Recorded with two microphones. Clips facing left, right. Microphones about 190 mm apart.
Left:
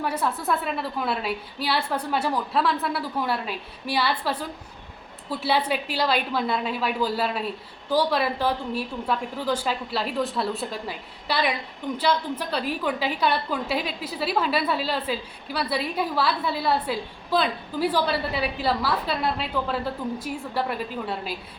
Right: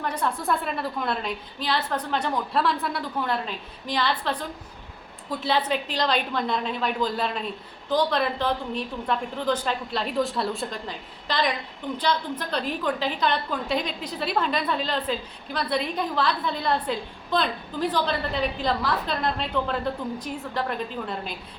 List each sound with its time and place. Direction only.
0.0 s a woman's voice: 5° left (ahead or behind)